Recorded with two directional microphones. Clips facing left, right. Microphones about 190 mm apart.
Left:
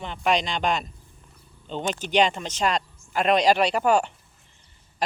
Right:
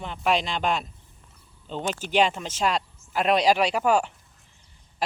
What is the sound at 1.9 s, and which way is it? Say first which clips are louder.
Speech: left 1 dB; 5° right (ahead or behind).